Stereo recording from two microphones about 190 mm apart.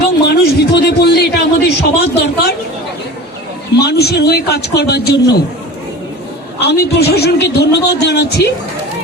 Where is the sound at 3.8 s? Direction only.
55° left (ahead or behind).